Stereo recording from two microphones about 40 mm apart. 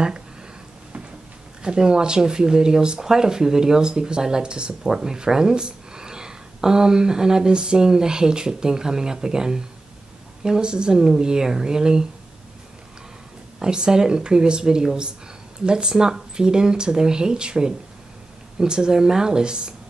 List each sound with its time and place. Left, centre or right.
1.6 s speech: right
13.6 s speech: centre